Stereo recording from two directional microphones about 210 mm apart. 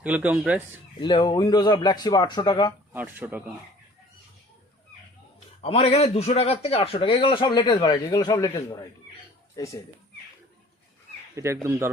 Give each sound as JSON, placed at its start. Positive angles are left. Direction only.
{"t": 0.0, "sound": "speech", "side_deg": -5}
{"t": 0.9, "sound": "a man's voice", "side_deg": 20}
{"t": 2.9, "sound": "speech", "side_deg": -10}
{"t": 5.6, "sound": "a man's voice", "side_deg": 30}
{"t": 11.3, "sound": "speech", "side_deg": -15}